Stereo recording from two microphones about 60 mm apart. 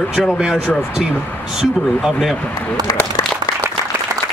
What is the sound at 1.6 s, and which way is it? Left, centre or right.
Speech, centre.